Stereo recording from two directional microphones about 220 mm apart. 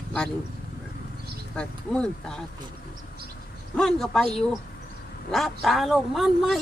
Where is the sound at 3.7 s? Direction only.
Centre (ahead or behind).